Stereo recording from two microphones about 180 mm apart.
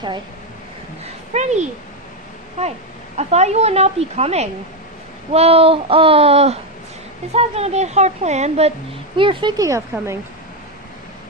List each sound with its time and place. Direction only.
1.3 s a woman's voice: 40° right (ahead or behind)
3.2 s a woman's voice: 40° right (ahead or behind); by 10.1 s 15° right (ahead or behind)